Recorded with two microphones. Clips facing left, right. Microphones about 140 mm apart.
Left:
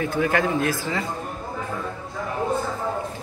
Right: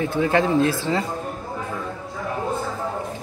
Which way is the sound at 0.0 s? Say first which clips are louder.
Right 2 dB; 25° right (ahead or behind).